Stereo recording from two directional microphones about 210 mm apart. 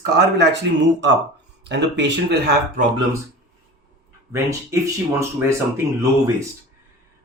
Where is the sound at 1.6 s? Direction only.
55° right (ahead or behind).